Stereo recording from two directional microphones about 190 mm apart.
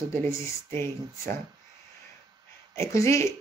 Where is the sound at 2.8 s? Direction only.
15° left (ahead or behind).